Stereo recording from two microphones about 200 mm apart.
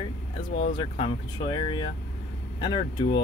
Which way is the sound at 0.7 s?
25° left (ahead or behind).